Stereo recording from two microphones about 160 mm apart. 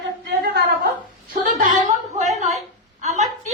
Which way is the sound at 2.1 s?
45° right (ahead or behind).